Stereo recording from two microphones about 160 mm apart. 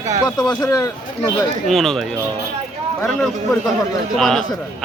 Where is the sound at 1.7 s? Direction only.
Centre (ahead or behind).